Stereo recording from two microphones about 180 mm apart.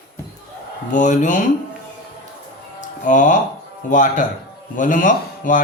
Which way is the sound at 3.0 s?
45° left (ahead or behind).